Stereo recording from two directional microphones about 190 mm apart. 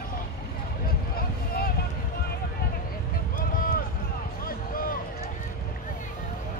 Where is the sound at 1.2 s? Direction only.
50° left (ahead or behind).